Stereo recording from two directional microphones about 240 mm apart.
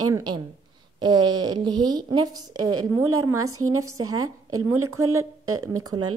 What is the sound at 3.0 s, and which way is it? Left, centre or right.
Speech, right.